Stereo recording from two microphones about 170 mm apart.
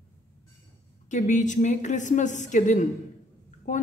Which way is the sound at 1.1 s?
45° left (ahead or behind).